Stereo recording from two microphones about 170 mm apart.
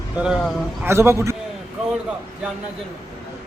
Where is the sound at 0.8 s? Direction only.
15° right (ahead or behind).